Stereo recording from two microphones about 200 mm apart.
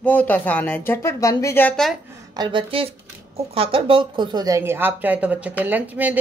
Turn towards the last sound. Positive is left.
turn(degrees=-10)  # may be behind; listen again after turning